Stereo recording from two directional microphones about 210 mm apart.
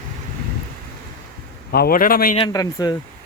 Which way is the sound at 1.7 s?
45° left (ahead or behind).